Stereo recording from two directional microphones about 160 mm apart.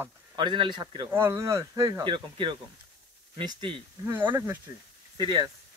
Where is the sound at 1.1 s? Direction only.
15° right (ahead or behind).